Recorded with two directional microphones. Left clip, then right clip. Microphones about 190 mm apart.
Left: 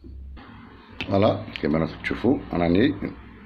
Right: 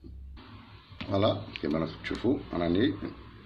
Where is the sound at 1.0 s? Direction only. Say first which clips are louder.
Left 6 dB; 25° left (ahead or behind).